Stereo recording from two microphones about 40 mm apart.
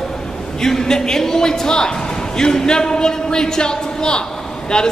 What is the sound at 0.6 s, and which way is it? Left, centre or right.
A man's voice, centre.